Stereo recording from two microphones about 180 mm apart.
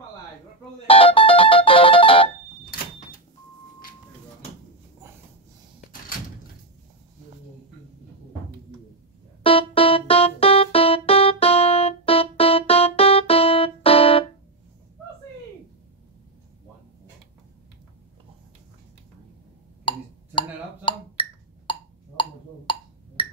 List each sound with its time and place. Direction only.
0.8 s music: 30° left (ahead or behind)
9.4 s keyboard: 30° left (ahead or behind)
19.8 s a sound: 30° left (ahead or behind)